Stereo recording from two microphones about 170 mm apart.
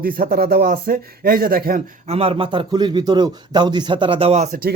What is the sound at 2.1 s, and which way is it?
A man's voice, 35° right (ahead or behind).